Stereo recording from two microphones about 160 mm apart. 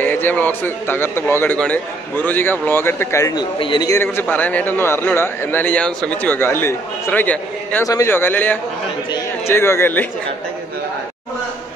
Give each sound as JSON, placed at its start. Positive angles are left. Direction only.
{"t": 0.0, "sound": "a man's voice", "side_deg": 10}
{"t": 3.5, "sound": "a man's voice", "side_deg": 30}
{"t": 3.9, "sound": "a man's voice", "side_deg": 15}